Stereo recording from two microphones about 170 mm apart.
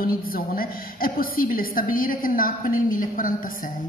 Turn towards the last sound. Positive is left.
turn(degrees=55)  # may be behind; listen again after turning